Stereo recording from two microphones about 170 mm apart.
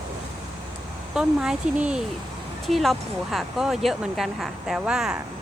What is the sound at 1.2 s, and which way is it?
Speech, 5° right (ahead or behind).